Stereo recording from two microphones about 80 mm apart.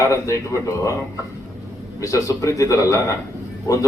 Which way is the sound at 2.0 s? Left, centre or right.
Left.